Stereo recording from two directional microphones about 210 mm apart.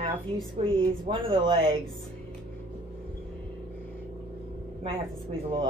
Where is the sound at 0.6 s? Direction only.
30° right (ahead or behind).